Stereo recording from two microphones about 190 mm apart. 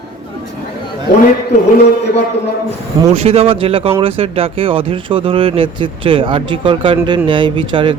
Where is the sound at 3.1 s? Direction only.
30° right (ahead or behind).